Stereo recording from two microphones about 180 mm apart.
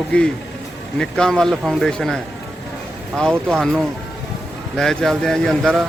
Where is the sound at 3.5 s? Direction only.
Centre (ahead or behind).